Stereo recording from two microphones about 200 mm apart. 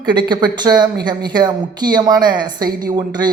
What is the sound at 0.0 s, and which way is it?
A man's voice, 20° right (ahead or behind).